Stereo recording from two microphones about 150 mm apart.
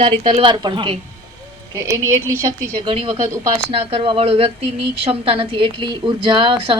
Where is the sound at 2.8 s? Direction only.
35° right (ahead or behind).